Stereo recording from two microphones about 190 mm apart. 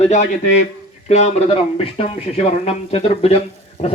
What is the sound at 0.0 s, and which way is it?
A man's voice, 35° left (ahead or behind).